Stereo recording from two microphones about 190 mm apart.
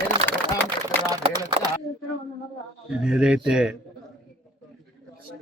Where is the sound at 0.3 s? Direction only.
10° left (ahead or behind).